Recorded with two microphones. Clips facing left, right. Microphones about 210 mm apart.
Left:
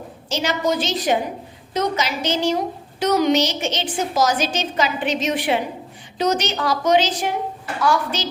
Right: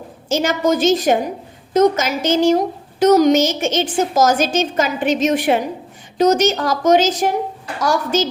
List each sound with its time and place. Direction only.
0.3 s a woman's voice: 50° right (ahead or behind)